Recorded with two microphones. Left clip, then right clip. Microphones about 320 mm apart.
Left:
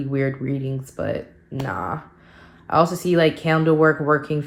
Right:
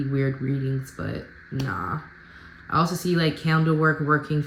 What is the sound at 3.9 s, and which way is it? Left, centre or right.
Speech, left.